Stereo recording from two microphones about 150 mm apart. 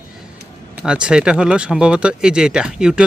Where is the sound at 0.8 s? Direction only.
5° right (ahead or behind).